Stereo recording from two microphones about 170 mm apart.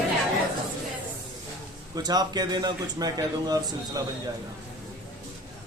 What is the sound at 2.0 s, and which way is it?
A man's voice, 25° right (ahead or behind).